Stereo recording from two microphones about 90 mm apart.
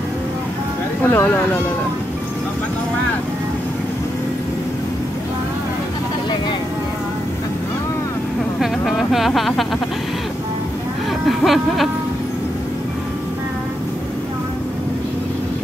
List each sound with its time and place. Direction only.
1.0 s speech: 25° left (ahead or behind)
8.5 s music: 5° right (ahead or behind)
11.2 s speech: centre (ahead or behind)